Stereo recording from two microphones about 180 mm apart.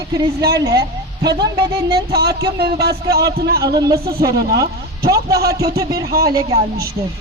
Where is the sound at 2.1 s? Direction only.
65° right (ahead or behind).